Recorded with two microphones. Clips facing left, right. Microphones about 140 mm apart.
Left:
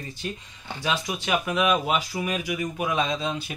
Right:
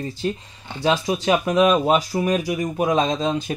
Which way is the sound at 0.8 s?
30° right (ahead or behind).